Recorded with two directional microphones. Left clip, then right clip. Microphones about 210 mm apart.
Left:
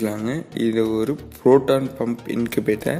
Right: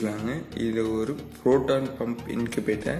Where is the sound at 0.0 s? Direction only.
40° left (ahead or behind).